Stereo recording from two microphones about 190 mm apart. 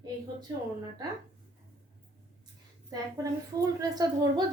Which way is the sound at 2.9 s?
20° right (ahead or behind).